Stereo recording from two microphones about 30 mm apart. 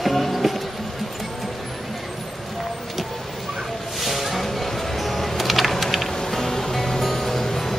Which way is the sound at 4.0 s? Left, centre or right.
Centre.